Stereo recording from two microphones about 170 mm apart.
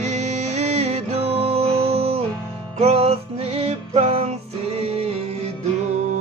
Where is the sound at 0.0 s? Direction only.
40° right (ahead or behind).